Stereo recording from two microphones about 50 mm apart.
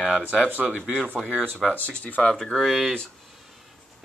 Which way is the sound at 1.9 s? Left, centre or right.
Left.